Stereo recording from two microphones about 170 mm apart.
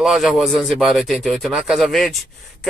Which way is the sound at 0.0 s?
Centre (ahead or behind).